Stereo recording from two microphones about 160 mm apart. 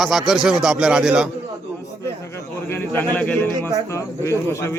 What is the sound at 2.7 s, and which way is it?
Speech, 15° left (ahead or behind).